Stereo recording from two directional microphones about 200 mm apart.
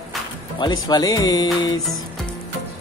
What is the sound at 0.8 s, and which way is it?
Speech, 20° left (ahead or behind).